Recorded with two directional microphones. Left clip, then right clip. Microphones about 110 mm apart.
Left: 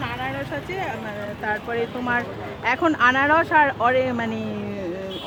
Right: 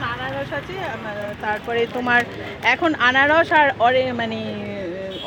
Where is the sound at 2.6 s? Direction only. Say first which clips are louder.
Right 1 dB; 30° left (ahead or behind).